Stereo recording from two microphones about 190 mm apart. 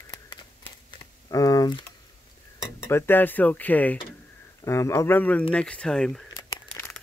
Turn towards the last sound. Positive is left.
turn(degrees=5)  # may be behind; listen again after turning